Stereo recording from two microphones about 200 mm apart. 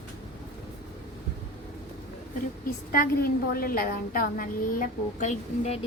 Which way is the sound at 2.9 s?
45° left (ahead or behind).